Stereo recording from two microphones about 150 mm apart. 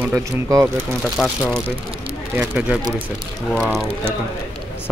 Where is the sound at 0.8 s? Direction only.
5° left (ahead or behind).